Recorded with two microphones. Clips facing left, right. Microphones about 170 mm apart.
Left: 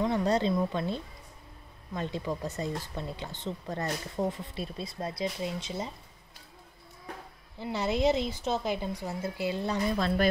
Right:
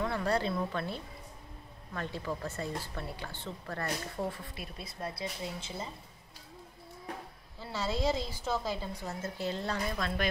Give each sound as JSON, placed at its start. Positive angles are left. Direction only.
{"t": 0.0, "sound": "speech", "side_deg": 20}
{"t": 7.5, "sound": "speech", "side_deg": 15}
{"t": 9.9, "sound": "speech", "side_deg": 35}